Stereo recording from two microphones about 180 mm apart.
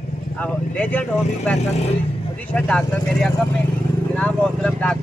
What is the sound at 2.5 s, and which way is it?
Speech, 5° left (ahead or behind).